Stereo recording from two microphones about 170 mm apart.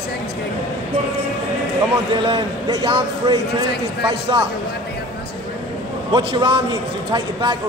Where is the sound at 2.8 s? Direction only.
25° right (ahead or behind).